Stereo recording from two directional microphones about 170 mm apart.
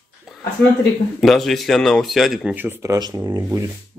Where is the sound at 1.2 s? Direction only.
Centre (ahead or behind); by 3.7 s 15° right (ahead or behind).